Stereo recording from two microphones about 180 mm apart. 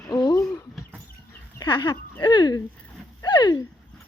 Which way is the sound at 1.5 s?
25° left (ahead or behind).